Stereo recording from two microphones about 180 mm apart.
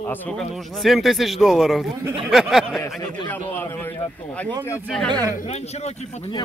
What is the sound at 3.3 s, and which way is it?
Speech, 10° left (ahead or behind).